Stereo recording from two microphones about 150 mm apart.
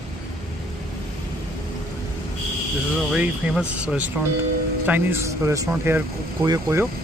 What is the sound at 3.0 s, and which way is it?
Speech, 5° right (ahead or behind).